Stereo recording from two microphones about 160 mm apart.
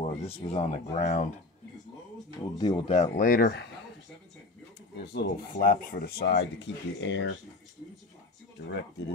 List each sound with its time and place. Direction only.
0.0 s speech: 40° left (ahead or behind)
2.5 s speech: 25° left (ahead or behind)
2.9 s speech: 50° left (ahead or behind); by 3.7 s 80° left
4.9 s speech: 90° left
8.6 s speech: 90° left